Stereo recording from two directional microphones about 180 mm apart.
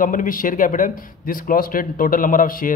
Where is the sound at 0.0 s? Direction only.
50° left (ahead or behind).